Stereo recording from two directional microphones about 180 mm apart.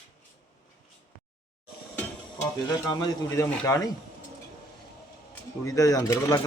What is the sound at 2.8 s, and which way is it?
Speech, 20° left (ahead or behind).